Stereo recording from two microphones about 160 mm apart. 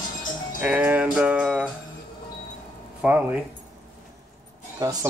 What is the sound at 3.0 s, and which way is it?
Speech, 10° right (ahead or behind).